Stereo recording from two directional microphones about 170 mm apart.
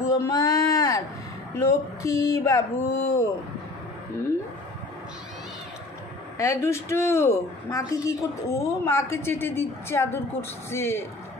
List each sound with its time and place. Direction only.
0.0 s a sound: 20° left (ahead or behind)
1.6 s a woman's voice: 20° left (ahead or behind)
6.3 s a woman's voice: 15° left (ahead or behind)